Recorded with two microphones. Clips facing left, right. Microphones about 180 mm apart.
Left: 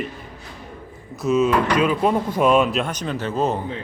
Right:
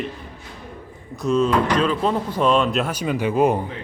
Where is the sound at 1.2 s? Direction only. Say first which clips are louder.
Even; 5° left (ahead or behind); by 3.6 s 15° right (ahead or behind).